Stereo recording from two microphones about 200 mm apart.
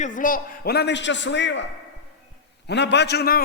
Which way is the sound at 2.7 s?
60° left (ahead or behind).